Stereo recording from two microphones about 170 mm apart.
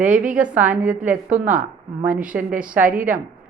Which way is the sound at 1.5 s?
50° right (ahead or behind).